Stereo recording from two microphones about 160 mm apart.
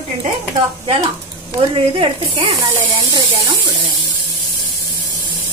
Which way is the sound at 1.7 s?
30° right (ahead or behind).